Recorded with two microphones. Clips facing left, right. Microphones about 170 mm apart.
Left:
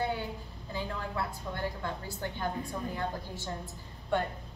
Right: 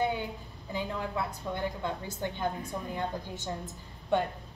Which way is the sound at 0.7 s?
15° right (ahead or behind).